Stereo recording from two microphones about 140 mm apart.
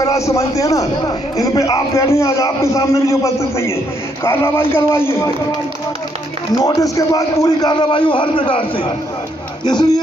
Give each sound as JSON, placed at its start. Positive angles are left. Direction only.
{"t": 0.0, "sound": "a man's voice", "side_deg": 20}
{"t": 6.6, "sound": "a man's voice", "side_deg": 25}